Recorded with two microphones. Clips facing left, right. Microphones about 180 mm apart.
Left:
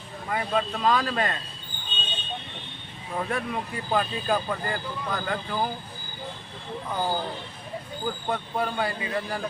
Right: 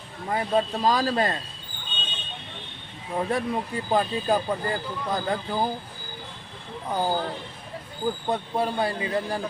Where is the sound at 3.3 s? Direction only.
30° right (ahead or behind).